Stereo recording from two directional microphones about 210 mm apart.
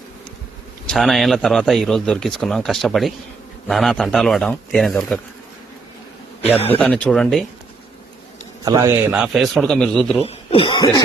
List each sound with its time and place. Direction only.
0.9 s speech: centre (ahead or behind)
6.7 s speech: 5° left (ahead or behind)
8.6 s speech: 15° right (ahead or behind); by 10.2 s 5° left (ahead or behind)
10.2 s speech: 25° left (ahead or behind)